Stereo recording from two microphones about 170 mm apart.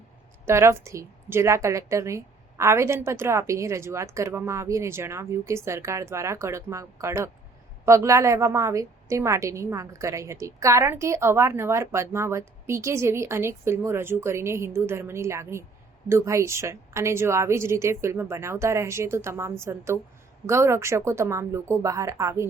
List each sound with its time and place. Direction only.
0.4 s a woman's voice: 15° right (ahead or behind)